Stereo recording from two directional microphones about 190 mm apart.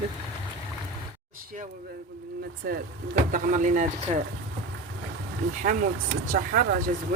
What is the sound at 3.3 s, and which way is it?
Speech, 40° right (ahead or behind).